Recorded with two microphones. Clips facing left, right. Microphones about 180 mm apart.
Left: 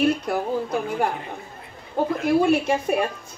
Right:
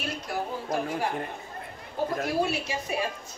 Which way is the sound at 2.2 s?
55° left (ahead or behind).